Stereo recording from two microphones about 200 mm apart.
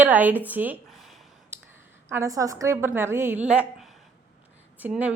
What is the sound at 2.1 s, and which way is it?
Speech, 15° right (ahead or behind).